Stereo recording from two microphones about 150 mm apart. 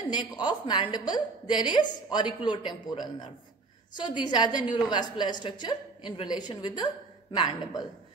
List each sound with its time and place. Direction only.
0.1 s a woman's voice: 30° left (ahead or behind)